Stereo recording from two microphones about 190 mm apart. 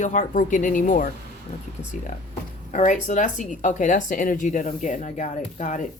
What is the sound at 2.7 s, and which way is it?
Speech, 40° left (ahead or behind).